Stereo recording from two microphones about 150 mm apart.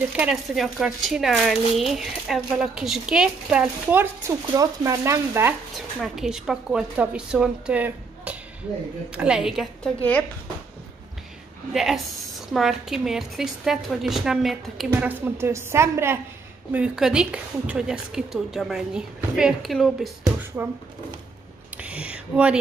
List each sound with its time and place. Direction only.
0.1 s speech: 5° right (ahead or behind)
5.8 s speech: centre (ahead or behind)
11.7 s speech: centre (ahead or behind)
14.9 s a woman's voice: 15° right (ahead or behind)
16.7 s speech: 5° right (ahead or behind)
20.6 s a woman's voice: 15° right (ahead or behind)
21.8 s speech: 10° right (ahead or behind)